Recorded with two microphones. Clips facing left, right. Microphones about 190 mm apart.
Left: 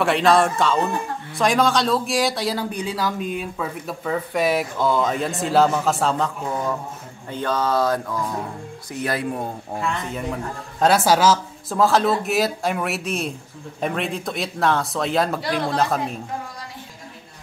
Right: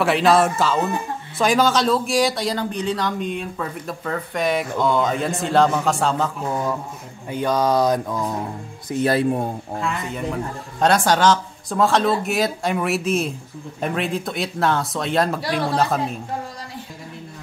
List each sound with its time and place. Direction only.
0.0 s a man's voice: centre (ahead or behind)
7.2 s a sound: 15° right (ahead or behind)
8.8 s speech: 25° right (ahead or behind)
9.8 s a man's voice: centre (ahead or behind)